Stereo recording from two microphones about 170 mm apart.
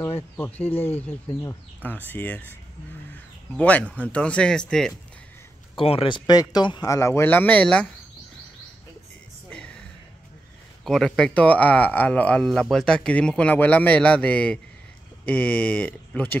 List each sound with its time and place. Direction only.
0.4 s speech: 10° left (ahead or behind)
5.8 s speech: 35° left (ahead or behind); by 7.9 s 5° left (ahead or behind)
9.5 s a sound: 5° left (ahead or behind)
10.8 s speech: centre (ahead or behind)